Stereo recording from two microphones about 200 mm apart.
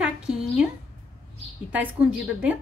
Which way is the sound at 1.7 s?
5° right (ahead or behind).